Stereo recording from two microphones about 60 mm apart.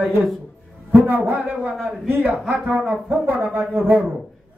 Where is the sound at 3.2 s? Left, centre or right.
Right.